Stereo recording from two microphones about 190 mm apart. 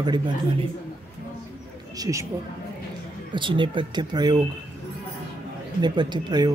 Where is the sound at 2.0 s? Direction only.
15° right (ahead or behind).